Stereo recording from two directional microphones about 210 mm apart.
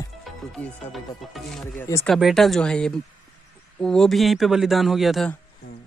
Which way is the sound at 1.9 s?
15° left (ahead or behind).